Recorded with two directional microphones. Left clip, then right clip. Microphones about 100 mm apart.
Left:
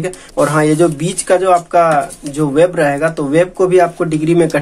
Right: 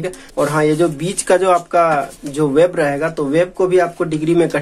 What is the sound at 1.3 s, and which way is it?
Speech, 25° right (ahead or behind).